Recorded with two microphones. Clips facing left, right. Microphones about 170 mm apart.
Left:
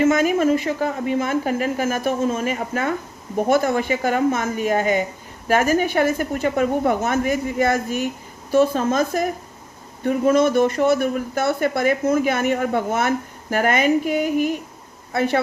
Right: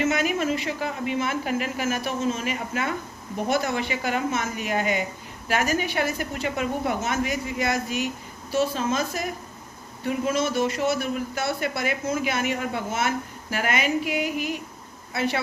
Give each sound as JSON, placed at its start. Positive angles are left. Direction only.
{"t": 0.0, "sound": "a man's voice", "side_deg": 45}